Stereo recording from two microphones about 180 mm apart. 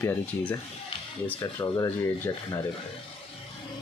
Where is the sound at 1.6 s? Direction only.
25° left (ahead or behind).